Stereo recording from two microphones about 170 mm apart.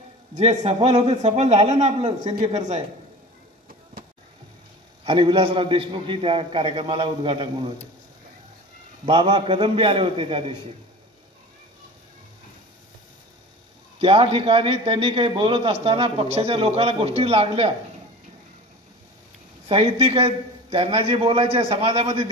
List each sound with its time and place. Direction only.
0.3 s a man's voice: 40° right (ahead or behind)
5.0 s a man's voice: 30° right (ahead or behind)
9.0 s a man's voice: 30° right (ahead or behind)
13.9 s a man's voice: 35° right (ahead or behind)
19.7 s a man's voice: 35° right (ahead or behind)